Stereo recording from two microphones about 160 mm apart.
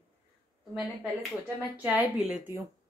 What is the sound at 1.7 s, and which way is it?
Speech, 10° right (ahead or behind).